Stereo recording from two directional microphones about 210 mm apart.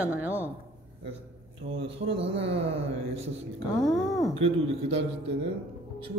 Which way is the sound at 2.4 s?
25° right (ahead or behind).